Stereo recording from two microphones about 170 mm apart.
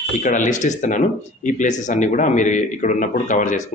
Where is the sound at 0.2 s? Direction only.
50° left (ahead or behind).